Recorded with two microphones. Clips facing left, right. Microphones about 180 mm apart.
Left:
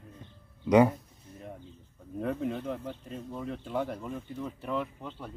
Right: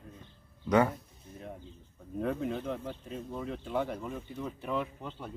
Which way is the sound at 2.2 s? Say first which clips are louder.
Left 1 dB; centre (ahead or behind).